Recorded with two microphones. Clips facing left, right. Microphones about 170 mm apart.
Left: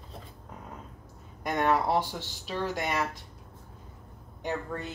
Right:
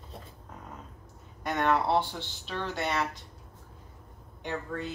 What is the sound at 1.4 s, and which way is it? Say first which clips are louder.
Speech: left 1 dB; 10° left (ahead or behind).